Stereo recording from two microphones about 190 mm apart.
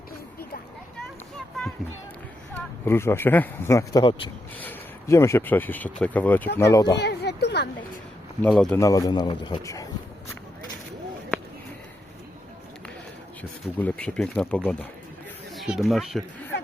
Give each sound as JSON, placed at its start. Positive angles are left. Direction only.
{"t": 2.8, "sound": "speech", "side_deg": 15}
{"t": 6.9, "sound": "a sound", "side_deg": 60}
{"t": 8.4, "sound": "speech", "side_deg": 5}
{"t": 8.8, "sound": "speech", "side_deg": 20}
{"t": 13.7, "sound": "speech", "side_deg": 5}